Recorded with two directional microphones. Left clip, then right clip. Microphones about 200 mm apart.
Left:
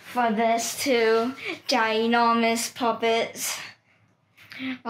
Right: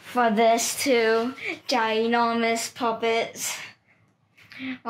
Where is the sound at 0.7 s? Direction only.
25° right (ahead or behind).